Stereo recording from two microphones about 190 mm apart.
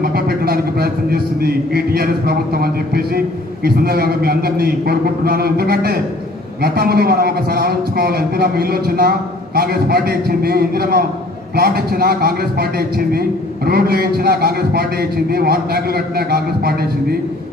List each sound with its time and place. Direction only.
0.0 s a man's voice: 55° right (ahead or behind)